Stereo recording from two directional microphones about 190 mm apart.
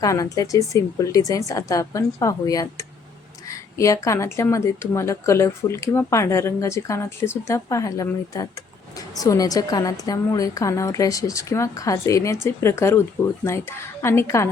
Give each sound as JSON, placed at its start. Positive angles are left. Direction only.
{"t": 0.0, "sound": "speech", "side_deg": 15}